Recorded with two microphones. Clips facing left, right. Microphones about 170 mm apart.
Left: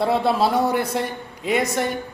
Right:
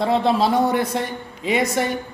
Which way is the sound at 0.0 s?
5° left (ahead or behind).